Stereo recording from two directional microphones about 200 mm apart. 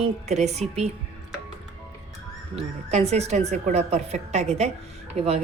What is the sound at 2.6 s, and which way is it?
Speech, 30° right (ahead or behind).